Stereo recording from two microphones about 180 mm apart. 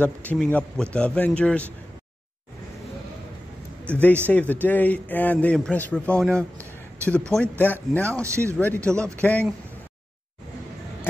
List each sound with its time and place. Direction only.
0.0 s a man's voice: 10° left (ahead or behind)
3.9 s a man's voice: 5° left (ahead or behind)
8.2 s speech: 15° right (ahead or behind)
8.5 s a man's voice: 10° left (ahead or behind)